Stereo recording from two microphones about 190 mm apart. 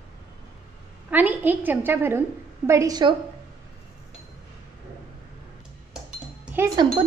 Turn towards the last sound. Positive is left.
turn(degrees=-20)  # may be behind; listen again after turning